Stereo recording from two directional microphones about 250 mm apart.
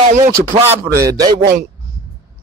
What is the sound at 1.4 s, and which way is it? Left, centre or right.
Speech, right.